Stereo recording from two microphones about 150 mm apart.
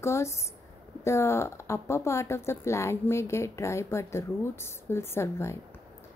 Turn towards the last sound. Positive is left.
turn(degrees=15)  # may be behind; listen again after turning